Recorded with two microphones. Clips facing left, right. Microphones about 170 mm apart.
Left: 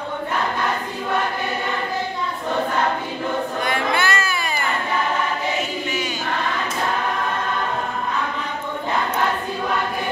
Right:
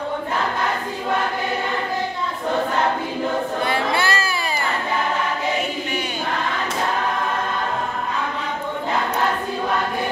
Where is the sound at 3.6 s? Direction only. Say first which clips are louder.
Left 1 dB; 30° right (ahead or behind).